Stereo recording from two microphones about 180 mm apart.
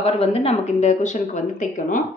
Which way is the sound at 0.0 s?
35° left (ahead or behind).